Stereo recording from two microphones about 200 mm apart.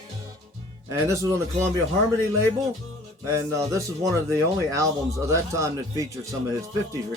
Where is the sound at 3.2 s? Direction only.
15° right (ahead or behind).